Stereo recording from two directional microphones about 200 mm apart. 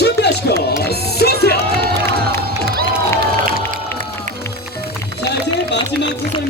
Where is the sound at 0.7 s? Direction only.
55° left (ahead or behind).